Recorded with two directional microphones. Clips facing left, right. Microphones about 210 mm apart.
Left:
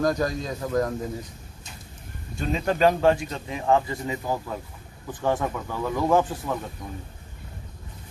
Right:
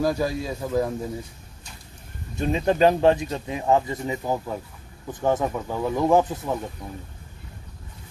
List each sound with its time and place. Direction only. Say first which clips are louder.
0.0 s a man's voice: right 1 dB; 5° right (ahead or behind)
2.3 s speech: right 3 dB; 20° right (ahead or behind)